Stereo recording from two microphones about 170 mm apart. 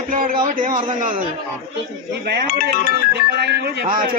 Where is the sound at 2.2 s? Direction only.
70° right (ahead or behind).